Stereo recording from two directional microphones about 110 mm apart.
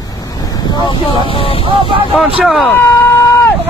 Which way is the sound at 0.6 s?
40° left (ahead or behind).